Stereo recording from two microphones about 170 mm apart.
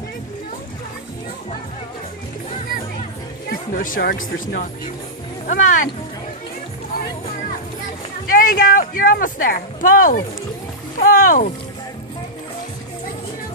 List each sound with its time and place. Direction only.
3.4 s music: 55° left (ahead or behind)
5.5 s speech: 50° left (ahead or behind)
8.3 s speech: 55° left (ahead or behind)